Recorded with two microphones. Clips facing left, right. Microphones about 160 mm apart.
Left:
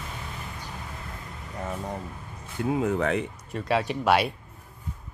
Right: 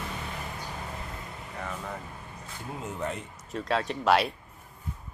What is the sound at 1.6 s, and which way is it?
Vehicle, 25° left (ahead or behind).